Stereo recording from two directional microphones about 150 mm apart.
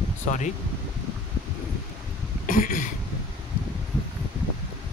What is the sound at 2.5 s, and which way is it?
Cough, 65° left (ahead or behind).